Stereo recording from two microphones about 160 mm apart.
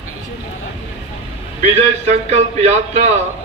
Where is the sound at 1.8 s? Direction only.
40° right (ahead or behind).